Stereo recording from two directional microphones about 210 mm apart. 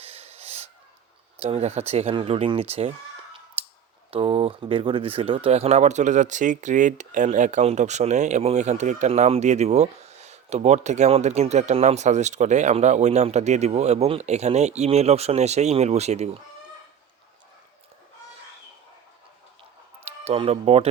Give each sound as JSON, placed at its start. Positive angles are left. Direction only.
{"t": 0.0, "sound": "snort", "side_deg": -30}
{"t": 1.4, "sound": "speech", "side_deg": -30}
{"t": 3.6, "sound": "clicking", "side_deg": -30}
{"t": 4.1, "sound": "speech", "side_deg": -25}
{"t": 20.1, "sound": "speech", "side_deg": -30}